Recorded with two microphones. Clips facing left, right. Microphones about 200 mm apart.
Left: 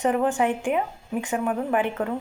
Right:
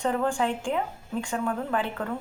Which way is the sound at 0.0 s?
20° left (ahead or behind).